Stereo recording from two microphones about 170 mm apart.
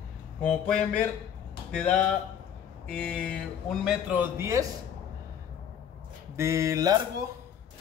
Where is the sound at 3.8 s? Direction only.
10° right (ahead or behind).